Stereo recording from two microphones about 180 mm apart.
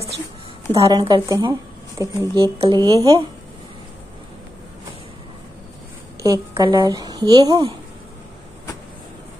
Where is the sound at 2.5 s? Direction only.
30° right (ahead or behind).